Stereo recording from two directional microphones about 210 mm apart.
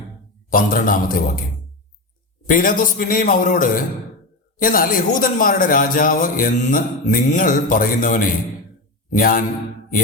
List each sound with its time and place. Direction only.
0.5 s speech: 40° left (ahead or behind)
2.5 s speech: 40° left (ahead or behind)